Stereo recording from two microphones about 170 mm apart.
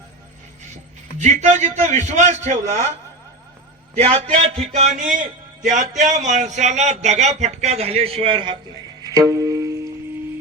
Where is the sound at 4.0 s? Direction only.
40° right (ahead or behind).